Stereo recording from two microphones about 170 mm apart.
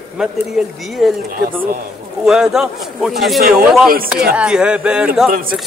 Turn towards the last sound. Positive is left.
turn(degrees=-55)  # may be behind; listen again after turning